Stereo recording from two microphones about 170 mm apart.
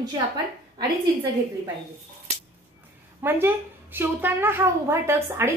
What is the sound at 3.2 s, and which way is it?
A woman's voice, 10° right (ahead or behind).